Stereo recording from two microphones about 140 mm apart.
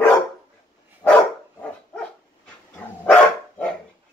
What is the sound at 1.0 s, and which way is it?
Dog, 10° left (ahead or behind).